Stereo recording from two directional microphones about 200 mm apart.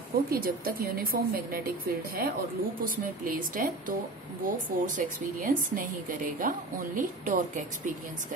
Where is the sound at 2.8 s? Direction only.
45° right (ahead or behind).